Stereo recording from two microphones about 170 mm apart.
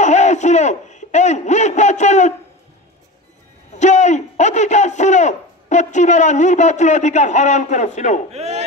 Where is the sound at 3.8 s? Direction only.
45° left (ahead or behind).